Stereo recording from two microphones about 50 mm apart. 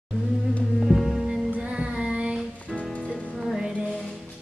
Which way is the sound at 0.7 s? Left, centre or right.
Centre.